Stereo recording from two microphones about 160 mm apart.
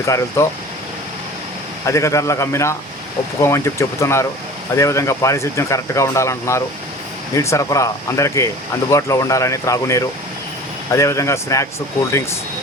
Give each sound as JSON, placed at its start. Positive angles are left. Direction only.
{"t": 0.0, "sound": "speech", "side_deg": 20}
{"t": 1.9, "sound": "speech", "side_deg": 20}